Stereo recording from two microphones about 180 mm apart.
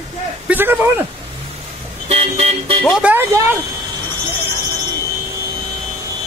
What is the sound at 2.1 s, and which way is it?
Car, 35° right (ahead or behind).